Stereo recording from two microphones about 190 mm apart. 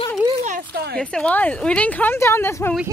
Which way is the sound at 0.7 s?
55° right (ahead or behind).